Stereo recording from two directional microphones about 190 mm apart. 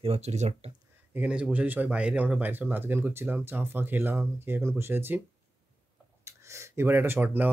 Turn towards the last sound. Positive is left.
turn(degrees=-10)  # may be behind; listen again after turning